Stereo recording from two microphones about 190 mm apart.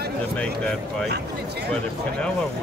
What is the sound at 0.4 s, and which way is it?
Speech, 5° left (ahead or behind).